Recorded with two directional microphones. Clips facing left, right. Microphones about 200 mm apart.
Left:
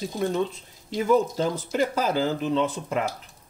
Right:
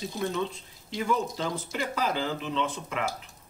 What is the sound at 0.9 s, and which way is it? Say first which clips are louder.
Speech: left 7 dB; 45° left (ahead or behind).